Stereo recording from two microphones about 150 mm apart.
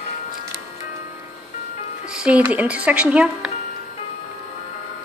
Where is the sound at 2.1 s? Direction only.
5° right (ahead or behind).